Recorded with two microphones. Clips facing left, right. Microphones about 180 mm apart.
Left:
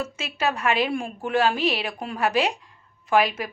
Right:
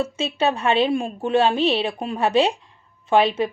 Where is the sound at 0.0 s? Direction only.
30° right (ahead or behind).